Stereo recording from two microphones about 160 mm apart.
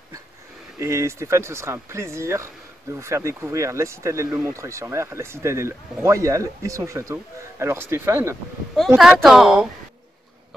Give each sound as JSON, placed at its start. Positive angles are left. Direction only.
{"t": 0.7, "sound": "speech", "side_deg": -20}
{"t": 8.7, "sound": "a woman's voice", "side_deg": 0}